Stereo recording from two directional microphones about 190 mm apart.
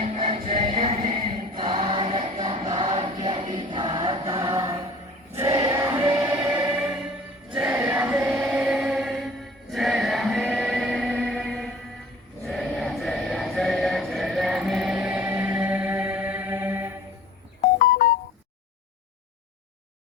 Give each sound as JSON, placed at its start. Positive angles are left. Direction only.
{"t": 0.0, "sound": "music", "side_deg": -30}
{"t": 5.3, "sound": "choir", "side_deg": -15}
{"t": 12.5, "sound": "music", "side_deg": 0}
{"t": 17.7, "sound": "music", "side_deg": 45}